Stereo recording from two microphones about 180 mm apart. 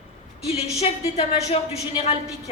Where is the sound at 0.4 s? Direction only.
35° left (ahead or behind).